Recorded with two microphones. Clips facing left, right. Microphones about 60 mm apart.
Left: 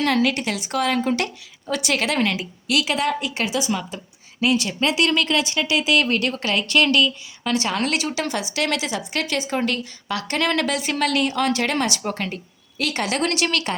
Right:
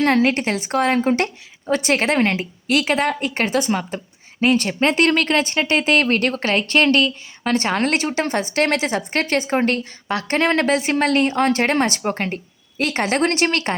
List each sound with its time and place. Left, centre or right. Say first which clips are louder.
0.0 s a woman's voice: right 3 dB; right